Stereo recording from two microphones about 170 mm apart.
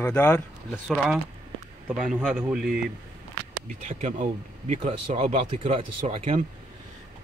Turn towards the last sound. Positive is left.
turn(degrees=-40)  # may be behind; listen again after turning